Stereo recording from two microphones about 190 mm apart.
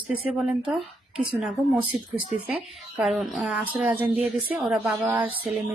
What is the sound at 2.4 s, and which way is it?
A woman's voice, 5° right (ahead or behind).